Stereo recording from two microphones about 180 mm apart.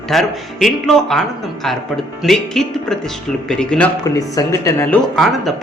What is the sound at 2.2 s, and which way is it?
Speech, centre (ahead or behind).